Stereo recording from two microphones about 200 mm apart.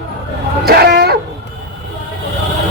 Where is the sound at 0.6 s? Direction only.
50° right (ahead or behind).